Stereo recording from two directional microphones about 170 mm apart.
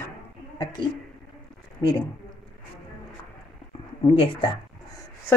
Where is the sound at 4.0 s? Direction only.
30° left (ahead or behind).